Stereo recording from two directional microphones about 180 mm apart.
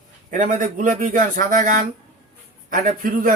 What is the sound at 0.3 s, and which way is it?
A man's voice, 45° right (ahead or behind).